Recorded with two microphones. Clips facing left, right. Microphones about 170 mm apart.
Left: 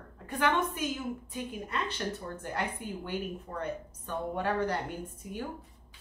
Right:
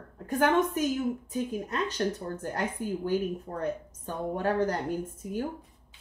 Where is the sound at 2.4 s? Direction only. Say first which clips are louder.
Right 3 dB; 40° right (ahead or behind).